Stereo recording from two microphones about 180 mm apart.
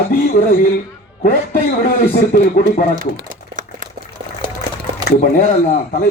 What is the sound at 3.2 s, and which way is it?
Crumpling, 45° right (ahead or behind).